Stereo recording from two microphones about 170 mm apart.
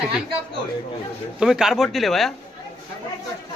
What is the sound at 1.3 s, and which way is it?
Speech, 5° right (ahead or behind).